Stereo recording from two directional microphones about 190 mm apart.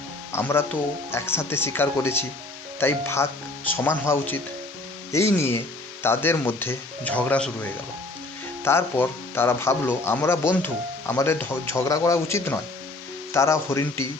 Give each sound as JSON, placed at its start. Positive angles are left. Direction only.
{"t": 0.3, "sound": "speech", "side_deg": 10}
{"t": 8.6, "sound": "speech", "side_deg": 10}